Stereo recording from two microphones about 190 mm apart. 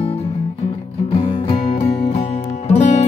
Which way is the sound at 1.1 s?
30° left (ahead or behind).